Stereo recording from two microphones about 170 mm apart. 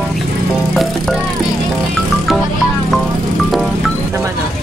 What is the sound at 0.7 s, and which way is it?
Music, centre (ahead or behind).